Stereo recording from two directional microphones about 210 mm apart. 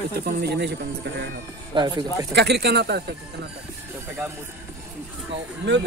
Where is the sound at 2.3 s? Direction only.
50° right (ahead or behind).